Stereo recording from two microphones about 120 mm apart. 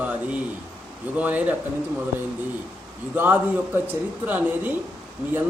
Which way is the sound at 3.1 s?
15° right (ahead or behind).